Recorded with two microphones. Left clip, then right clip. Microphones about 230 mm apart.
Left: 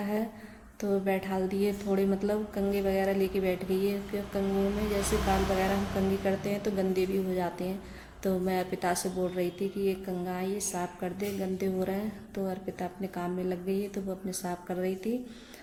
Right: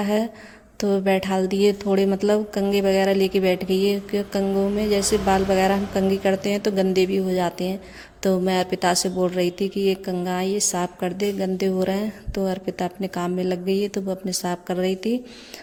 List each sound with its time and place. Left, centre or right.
0.0 s a woman's voice: right